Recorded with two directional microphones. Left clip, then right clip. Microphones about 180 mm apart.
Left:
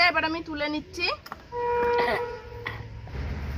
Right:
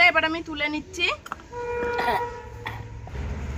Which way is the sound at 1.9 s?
20° left (ahead or behind).